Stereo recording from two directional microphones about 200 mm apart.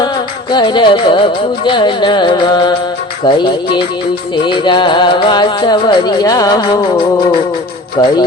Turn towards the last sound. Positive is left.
turn(degrees=25)  # may be behind; listen again after turning